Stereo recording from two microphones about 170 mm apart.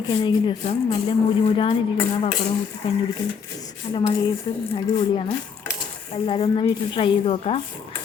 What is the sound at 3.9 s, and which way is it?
Speech, 30° left (ahead or behind).